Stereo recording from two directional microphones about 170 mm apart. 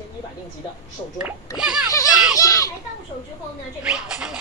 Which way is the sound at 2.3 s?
20° left (ahead or behind).